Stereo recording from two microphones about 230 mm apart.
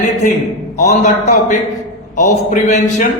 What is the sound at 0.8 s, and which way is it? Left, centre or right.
A man's voice, left.